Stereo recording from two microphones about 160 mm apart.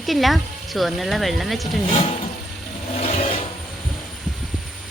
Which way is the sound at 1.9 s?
35° left (ahead or behind).